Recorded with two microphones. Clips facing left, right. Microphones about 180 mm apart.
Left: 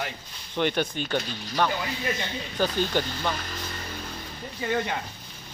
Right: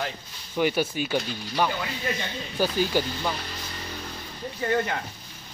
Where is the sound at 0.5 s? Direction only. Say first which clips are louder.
Right 2 dB; 5° right (ahead or behind).